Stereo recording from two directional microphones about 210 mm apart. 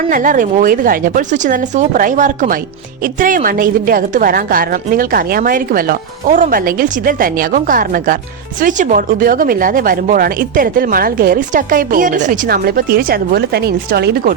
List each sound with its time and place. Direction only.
0.1 s speech: 40° right (ahead or behind)